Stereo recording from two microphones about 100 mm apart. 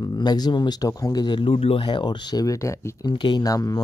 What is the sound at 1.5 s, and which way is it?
Speech, 75° left (ahead or behind).